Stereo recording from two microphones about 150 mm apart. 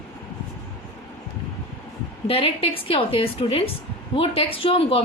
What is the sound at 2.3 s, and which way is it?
A woman's voice, 40° left (ahead or behind).